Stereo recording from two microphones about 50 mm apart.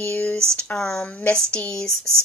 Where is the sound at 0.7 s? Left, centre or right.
Centre.